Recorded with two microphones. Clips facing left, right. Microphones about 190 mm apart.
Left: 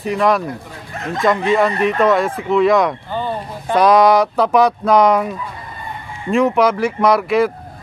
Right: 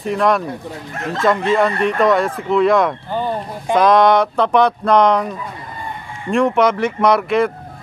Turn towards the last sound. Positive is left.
turn(degrees=0)  # may be behind; listen again after turning